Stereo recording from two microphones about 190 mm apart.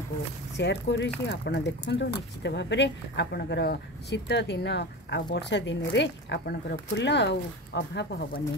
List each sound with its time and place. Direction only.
0.6 s speech: 65° left (ahead or behind)